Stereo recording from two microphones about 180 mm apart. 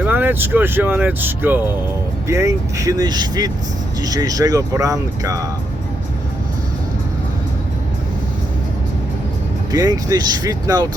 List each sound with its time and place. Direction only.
0.0 s speech: 10° right (ahead or behind)
9.7 s speech: 20° right (ahead or behind)